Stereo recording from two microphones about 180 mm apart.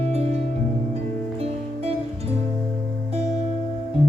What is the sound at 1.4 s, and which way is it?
Music, 35° right (ahead or behind).